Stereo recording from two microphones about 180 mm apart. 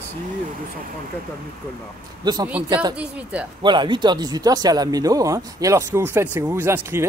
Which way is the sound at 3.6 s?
25° right (ahead or behind).